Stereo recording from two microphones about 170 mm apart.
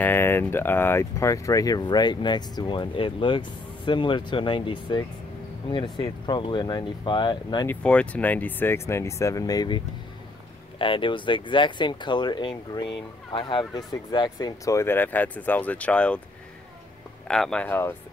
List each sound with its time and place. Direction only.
0.0 s speech: 15° left (ahead or behind); by 7.6 s 30° left (ahead or behind)
7.6 s speech: 5° left (ahead or behind)
17.3 s speech: 5° left (ahead or behind)